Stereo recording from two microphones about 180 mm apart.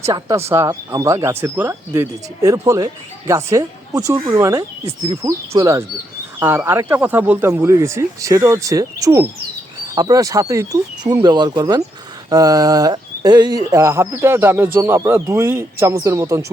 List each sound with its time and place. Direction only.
0.0 s speech: 20° right (ahead or behind)